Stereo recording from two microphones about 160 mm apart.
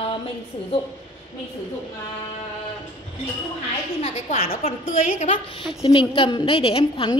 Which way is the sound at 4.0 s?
40° left (ahead or behind).